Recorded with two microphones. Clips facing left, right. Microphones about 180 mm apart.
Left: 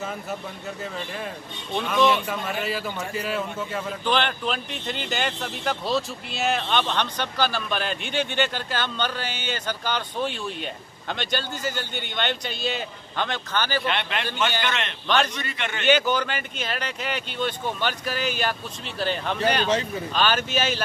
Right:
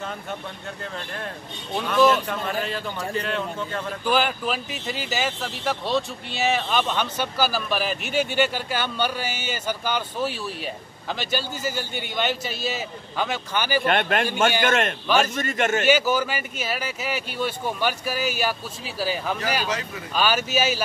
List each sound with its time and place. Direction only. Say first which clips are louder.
0.9 s speech: left 1 dB; 5° left (ahead or behind)
4.0 s speech: right 2 dB; 5° right (ahead or behind)
13.8 s a man's voice: right 5 dB; 50° right (ahead or behind)
15.9 s speech: left 4 dB; 5° right (ahead or behind)